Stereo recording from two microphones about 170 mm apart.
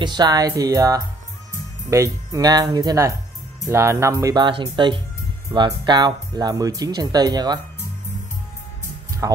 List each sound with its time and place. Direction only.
0.0 s speech: 25° right (ahead or behind)
9.2 s speech: 20° right (ahead or behind)